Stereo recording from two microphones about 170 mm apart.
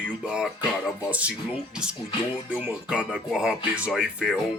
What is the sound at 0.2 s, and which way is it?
Speech, 5° right (ahead or behind).